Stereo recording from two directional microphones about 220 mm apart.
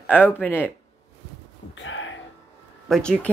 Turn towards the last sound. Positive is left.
turn(degrees=5)  # may be behind; listen again after turning